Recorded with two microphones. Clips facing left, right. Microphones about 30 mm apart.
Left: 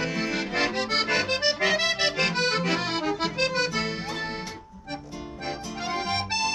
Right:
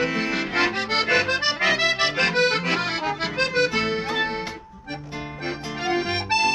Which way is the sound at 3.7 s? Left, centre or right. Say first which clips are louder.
Right 5 dB; centre.